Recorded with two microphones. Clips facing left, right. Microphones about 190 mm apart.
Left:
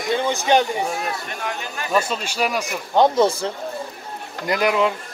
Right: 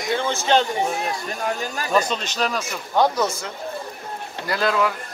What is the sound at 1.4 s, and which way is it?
Speech, 35° right (ahead or behind).